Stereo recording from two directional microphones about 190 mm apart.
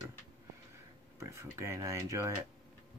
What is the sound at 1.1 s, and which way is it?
Speech, 15° right (ahead or behind).